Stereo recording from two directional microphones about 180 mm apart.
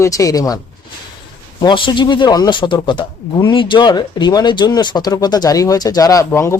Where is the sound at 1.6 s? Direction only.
25° left (ahead or behind).